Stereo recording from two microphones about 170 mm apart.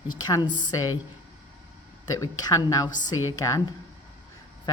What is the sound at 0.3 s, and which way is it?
Speech, 25° left (ahead or behind).